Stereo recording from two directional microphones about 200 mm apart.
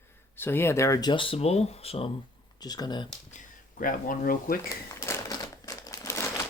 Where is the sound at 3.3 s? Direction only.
45° left (ahead or behind).